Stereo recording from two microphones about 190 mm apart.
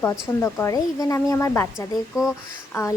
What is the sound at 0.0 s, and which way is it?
Speech, 15° left (ahead or behind).